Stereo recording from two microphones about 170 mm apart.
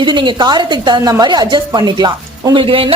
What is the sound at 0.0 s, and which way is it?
A woman's voice, 25° right (ahead or behind).